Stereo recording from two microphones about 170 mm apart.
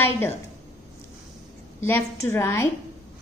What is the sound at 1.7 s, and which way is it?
Speech, 15° left (ahead or behind).